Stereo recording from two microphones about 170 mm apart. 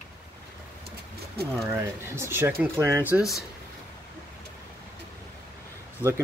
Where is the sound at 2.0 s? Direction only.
15° right (ahead or behind).